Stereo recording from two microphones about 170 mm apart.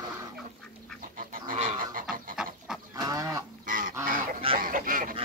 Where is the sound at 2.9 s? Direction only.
20° right (ahead or behind).